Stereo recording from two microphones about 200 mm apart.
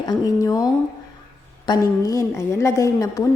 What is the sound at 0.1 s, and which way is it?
A woman's voice, 20° left (ahead or behind).